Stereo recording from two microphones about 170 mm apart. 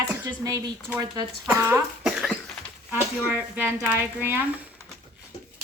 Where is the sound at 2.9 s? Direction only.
15° right (ahead or behind).